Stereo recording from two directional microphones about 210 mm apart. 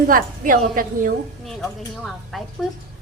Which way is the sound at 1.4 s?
Centre (ahead or behind).